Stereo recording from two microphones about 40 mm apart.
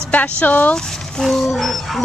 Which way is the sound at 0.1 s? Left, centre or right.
Left.